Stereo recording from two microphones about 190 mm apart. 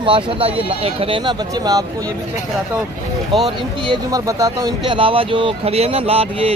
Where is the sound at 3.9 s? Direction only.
20° right (ahead or behind).